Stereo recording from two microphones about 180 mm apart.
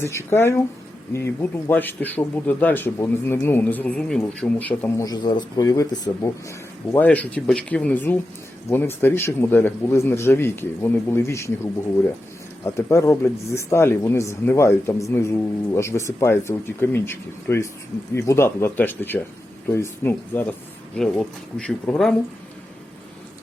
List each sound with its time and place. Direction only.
0.0 s speech: 15° left (ahead or behind)
5.0 s speech: 25° left (ahead or behind); by 22.1 s 5° left (ahead or behind)